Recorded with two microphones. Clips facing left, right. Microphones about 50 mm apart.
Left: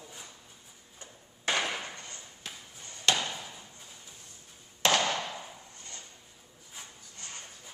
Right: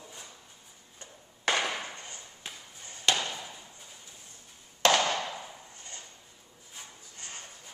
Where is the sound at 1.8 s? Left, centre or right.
Right.